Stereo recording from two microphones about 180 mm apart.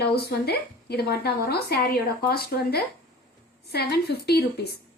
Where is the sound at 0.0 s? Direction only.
60° left (ahead or behind).